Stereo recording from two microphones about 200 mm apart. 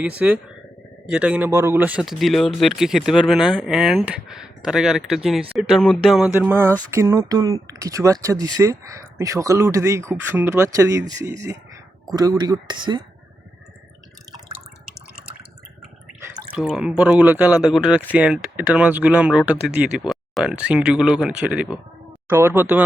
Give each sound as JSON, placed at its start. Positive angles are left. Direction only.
{"t": 0.2, "sound": "speech", "side_deg": -5}
{"t": 16.6, "sound": "speech", "side_deg": -5}